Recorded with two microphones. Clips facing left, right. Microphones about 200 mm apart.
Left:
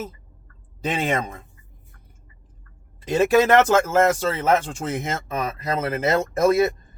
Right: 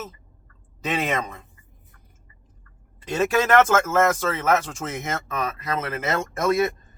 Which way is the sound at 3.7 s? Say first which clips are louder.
Left 2 dB; 35° left (ahead or behind).